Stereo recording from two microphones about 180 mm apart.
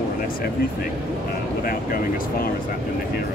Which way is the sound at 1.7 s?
55° left (ahead or behind).